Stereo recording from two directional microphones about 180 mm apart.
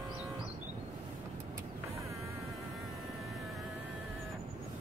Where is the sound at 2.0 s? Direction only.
15° right (ahead or behind).